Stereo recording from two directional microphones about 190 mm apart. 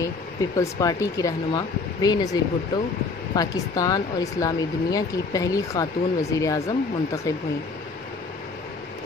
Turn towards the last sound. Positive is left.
turn(degrees=15)  # may be behind; listen again after turning